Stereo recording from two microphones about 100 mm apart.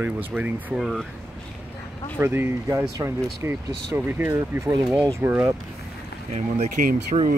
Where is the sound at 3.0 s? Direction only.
40° right (ahead or behind).